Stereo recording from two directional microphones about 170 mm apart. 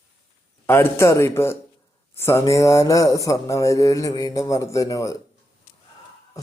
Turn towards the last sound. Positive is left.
turn(degrees=20)  # may be behind; listen again after turning